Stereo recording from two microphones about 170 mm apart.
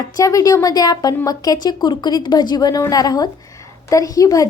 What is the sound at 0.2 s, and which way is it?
A woman's voice, 20° left (ahead or behind).